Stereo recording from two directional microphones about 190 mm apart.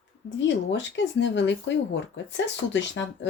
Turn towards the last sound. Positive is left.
turn(degrees=70)  # may be behind; listen again after turning